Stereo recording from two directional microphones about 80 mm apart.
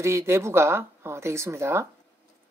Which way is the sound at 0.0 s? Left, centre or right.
Right.